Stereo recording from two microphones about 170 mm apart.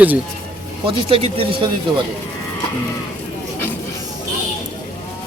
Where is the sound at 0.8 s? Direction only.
35° right (ahead or behind).